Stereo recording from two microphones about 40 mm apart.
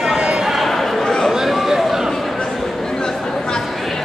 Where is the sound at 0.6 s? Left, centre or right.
Centre.